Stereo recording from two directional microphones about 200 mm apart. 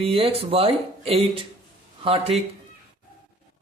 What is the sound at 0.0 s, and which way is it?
Speech, 30° right (ahead or behind).